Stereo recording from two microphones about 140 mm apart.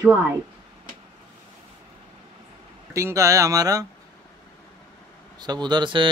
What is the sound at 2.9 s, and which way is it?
Speech, 20° right (ahead or behind).